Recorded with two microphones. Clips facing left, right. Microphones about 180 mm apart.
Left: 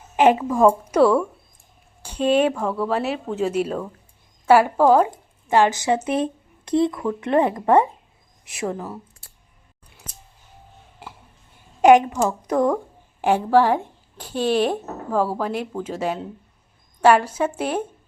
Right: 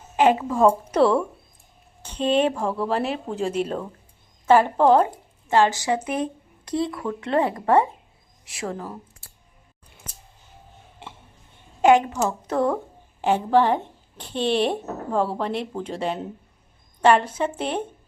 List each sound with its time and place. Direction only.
0.5 s speech: 10° left (ahead or behind)
2.2 s speech: 30° right (ahead or behind)
2.6 s speech: centre (ahead or behind)
5.5 s speech: 15° left (ahead or behind)
11.8 s a woman's voice: 15° left (ahead or behind)